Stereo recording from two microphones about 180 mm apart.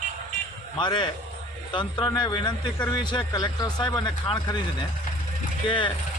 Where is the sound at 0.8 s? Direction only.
25° left (ahead or behind).